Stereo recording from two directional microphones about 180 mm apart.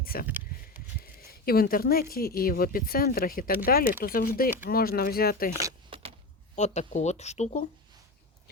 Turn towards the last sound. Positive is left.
turn(degrees=40)  # may be behind; listen again after turning